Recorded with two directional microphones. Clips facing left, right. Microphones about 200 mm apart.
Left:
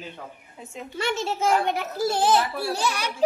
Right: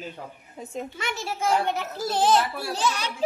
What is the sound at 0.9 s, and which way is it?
Speech, 25° left (ahead or behind).